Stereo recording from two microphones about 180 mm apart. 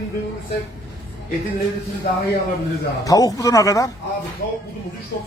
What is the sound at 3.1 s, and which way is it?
Speech, 20° left (ahead or behind).